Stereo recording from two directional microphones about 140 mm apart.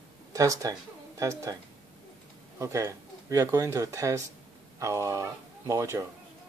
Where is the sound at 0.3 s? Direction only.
25° right (ahead or behind).